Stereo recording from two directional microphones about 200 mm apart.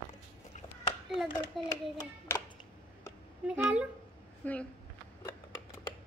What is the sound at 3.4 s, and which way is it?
Speech, 5° right (ahead or behind).